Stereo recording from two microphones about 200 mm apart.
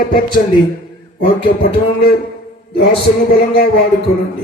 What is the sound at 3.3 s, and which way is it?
Speech, 50° left (ahead or behind).